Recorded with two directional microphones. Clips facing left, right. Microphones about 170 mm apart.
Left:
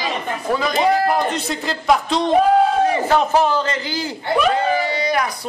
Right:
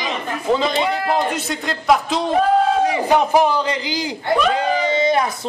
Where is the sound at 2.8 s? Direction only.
15° right (ahead or behind).